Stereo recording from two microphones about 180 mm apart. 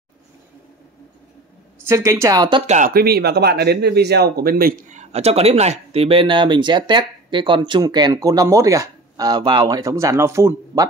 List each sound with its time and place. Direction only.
1.9 s speech: 15° right (ahead or behind)
2.6 s speech: 40° right (ahead or behind)
2.9 s speech: 60° right (ahead or behind); by 10.9 s 20° right (ahead or behind)